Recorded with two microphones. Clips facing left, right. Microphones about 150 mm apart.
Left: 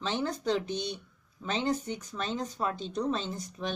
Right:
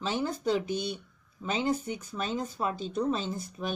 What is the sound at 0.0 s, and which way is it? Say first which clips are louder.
A woman's voice: right 1 dB; 5° right (ahead or behind).